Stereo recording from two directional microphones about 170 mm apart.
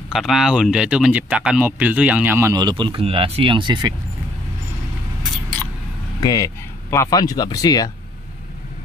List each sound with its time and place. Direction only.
0.1 s speech: centre (ahead or behind); by 3.9 s 25° right (ahead or behind)
6.2 s speech: 20° left (ahead or behind)